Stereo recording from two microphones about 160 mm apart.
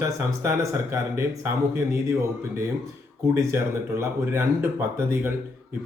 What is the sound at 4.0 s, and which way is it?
Speech, 15° right (ahead or behind).